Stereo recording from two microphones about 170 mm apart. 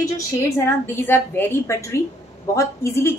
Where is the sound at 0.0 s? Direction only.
15° left (ahead or behind).